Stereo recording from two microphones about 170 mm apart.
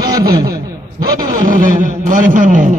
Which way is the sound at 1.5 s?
50° right (ahead or behind).